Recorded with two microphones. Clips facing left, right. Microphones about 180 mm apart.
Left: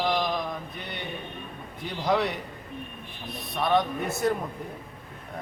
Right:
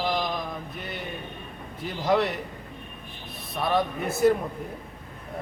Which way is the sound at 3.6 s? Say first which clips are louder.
Left 1 dB; centre (ahead or behind).